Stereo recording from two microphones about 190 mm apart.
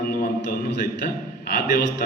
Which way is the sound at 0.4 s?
60° left (ahead or behind).